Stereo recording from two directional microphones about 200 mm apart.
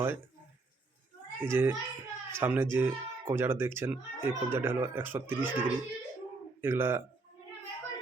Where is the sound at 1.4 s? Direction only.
10° right (ahead or behind).